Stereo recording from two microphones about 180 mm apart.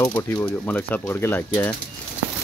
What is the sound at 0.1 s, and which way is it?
Speech, 15° left (ahead or behind).